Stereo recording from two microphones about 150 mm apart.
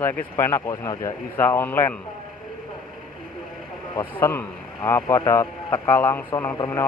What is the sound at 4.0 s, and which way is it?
A man's voice, 15° left (ahead or behind).